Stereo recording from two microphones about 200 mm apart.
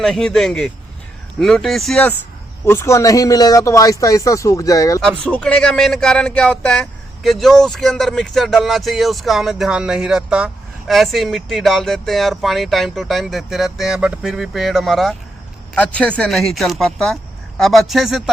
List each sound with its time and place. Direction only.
0.0 s speech: centre (ahead or behind); by 4.9 s 15° left (ahead or behind)
5.0 s speech: 5° left (ahead or behind)